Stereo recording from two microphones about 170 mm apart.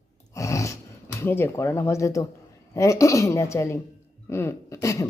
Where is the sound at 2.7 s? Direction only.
15° left (ahead or behind).